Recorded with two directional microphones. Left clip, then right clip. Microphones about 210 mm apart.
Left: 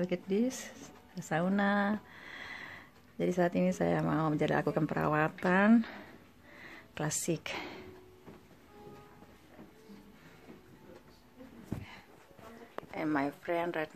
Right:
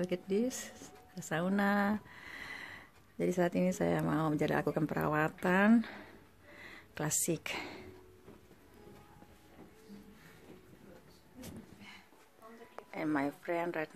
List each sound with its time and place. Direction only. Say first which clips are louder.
0.0 s speech: left 1 dB; 5° left (ahead or behind)
5.4 s a sound: left 1 dB; centre (ahead or behind)
12.9 s a woman's voice: left 2 dB; centre (ahead or behind)